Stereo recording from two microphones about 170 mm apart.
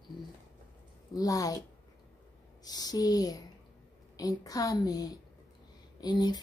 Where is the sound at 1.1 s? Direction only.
20° left (ahead or behind).